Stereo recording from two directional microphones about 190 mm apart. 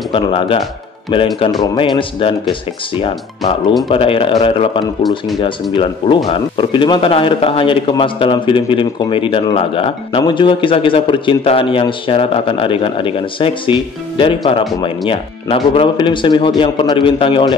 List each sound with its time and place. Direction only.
0.1 s speech: 30° left (ahead or behind)